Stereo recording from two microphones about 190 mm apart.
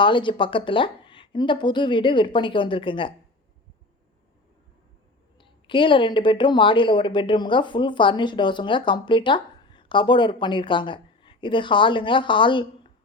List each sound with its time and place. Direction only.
0.0 s a woman's voice: 25° left (ahead or behind)
5.4 s a woman's voice: 25° left (ahead or behind)